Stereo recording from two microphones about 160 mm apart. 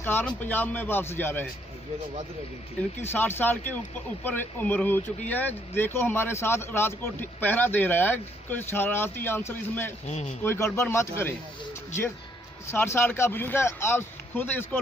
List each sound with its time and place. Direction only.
0.0 s speech: 10° left (ahead or behind)
3.0 s speech: 15° left (ahead or behind)
10.0 s speech: 45° left (ahead or behind)
10.4 s speech: 15° left (ahead or behind)
12.7 s speech: 15° left (ahead or behind)